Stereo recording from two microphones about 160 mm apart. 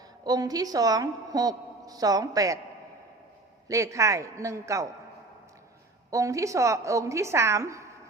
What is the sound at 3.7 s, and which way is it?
Speech, 20° right (ahead or behind).